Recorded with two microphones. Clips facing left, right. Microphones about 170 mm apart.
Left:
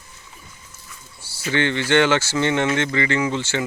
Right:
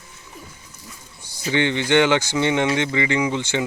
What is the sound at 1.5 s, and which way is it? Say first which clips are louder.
Speech: right 1 dB; 15° right (ahead or behind).